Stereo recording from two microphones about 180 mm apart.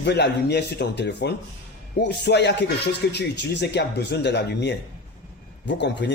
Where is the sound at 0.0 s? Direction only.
70° left (ahead or behind).